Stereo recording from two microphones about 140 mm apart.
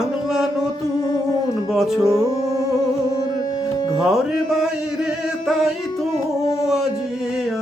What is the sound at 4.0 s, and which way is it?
Music, 5° right (ahead or behind).